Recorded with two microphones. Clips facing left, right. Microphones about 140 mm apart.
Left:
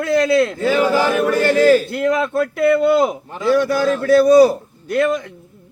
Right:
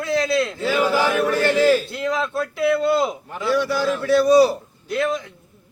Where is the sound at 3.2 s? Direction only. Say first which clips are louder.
Left 4 dB; 25° left (ahead or behind).